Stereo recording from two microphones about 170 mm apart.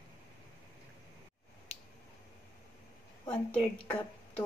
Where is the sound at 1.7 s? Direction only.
35° left (ahead or behind).